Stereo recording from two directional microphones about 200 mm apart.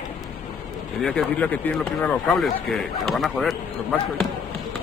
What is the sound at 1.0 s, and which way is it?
Speech, 5° left (ahead or behind).